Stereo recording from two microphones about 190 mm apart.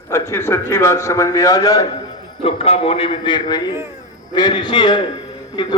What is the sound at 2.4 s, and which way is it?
A man's voice, 30° left (ahead or behind).